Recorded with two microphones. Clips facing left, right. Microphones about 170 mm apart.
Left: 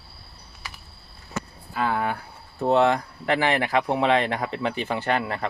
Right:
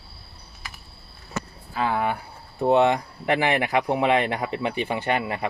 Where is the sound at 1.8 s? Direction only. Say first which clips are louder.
Right 1 dB; 10° right (ahead or behind).